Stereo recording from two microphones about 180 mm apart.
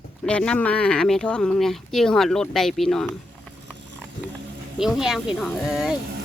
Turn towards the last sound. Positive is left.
turn(degrees=0)  # may be behind; listen again after turning